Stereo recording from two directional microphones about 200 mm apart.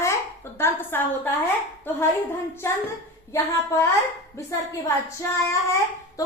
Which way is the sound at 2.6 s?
15° left (ahead or behind).